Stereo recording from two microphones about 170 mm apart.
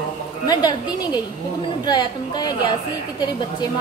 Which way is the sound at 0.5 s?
25° left (ahead or behind).